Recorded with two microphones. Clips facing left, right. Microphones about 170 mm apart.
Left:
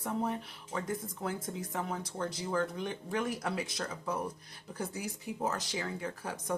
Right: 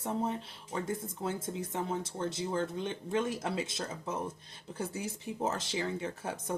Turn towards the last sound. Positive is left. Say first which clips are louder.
# even
turn(degrees=-25)  # may be behind; listen again after turning